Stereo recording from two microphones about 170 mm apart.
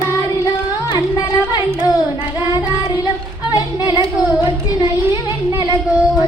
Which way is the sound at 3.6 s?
25° left (ahead or behind).